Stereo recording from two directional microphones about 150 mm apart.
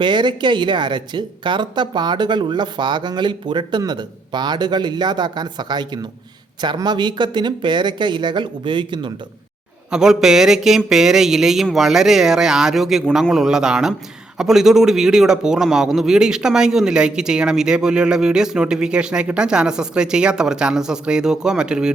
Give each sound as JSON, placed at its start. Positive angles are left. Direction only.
{"t": 0.0, "sound": "speech", "side_deg": -30}
{"t": 9.9, "sound": "a man's voice", "side_deg": -5}